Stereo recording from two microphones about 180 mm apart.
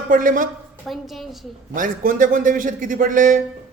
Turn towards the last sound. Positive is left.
turn(degrees=-45)  # may be behind; listen again after turning